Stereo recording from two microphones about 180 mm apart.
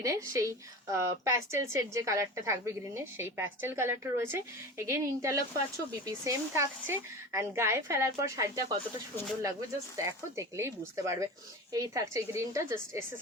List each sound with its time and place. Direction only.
0.0 s speech: 20° right (ahead or behind)